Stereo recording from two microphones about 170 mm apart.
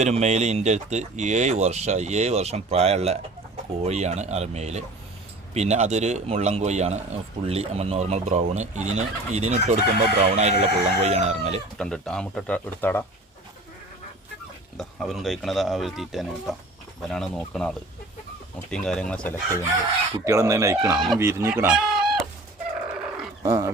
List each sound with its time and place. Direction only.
0.0 s a man's voice: 40° right (ahead or behind)
11.8 s speech: 5° left (ahead or behind)
14.8 s speech: centre (ahead or behind)
20.2 s speech: 15° right (ahead or behind)
23.0 s dog: 5° right (ahead or behind)
23.4 s speech: 15° right (ahead or behind)